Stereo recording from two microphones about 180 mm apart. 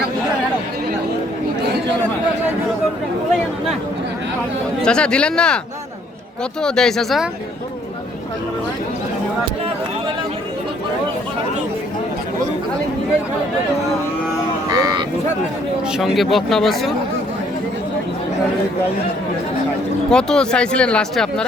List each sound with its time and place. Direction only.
4.8 s speech: 5° left (ahead or behind)
6.6 s speech: 5° left (ahead or behind)
14.7 s a sound: 20° right (ahead or behind)
15.9 s speech: centre (ahead or behind)
20.1 s speech: 5° left (ahead or behind)